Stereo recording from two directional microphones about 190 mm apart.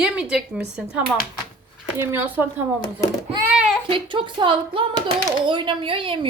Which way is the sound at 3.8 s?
25° right (ahead or behind).